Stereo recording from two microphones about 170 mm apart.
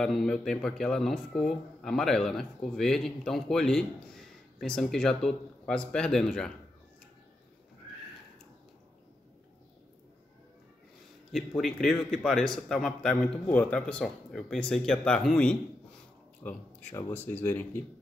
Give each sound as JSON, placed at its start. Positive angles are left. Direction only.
{"t": 0.0, "sound": "speech", "side_deg": 0}
{"t": 11.3, "sound": "speech", "side_deg": 0}